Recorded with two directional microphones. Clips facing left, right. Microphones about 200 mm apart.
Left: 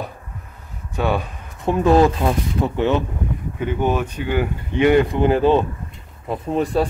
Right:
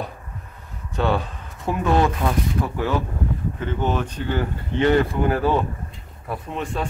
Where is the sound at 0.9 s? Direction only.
10° left (ahead or behind).